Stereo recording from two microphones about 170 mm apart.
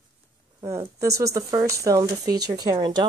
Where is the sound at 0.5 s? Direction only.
20° right (ahead or behind).